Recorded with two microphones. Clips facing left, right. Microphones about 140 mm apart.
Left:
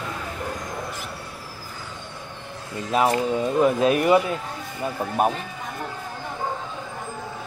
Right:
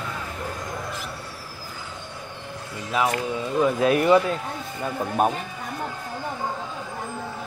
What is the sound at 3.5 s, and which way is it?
Speech, 20° left (ahead or behind).